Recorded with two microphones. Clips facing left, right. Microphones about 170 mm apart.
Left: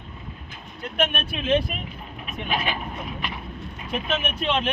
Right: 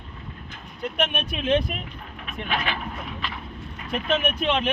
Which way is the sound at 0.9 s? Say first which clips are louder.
Left 2 dB; 5° left (ahead or behind).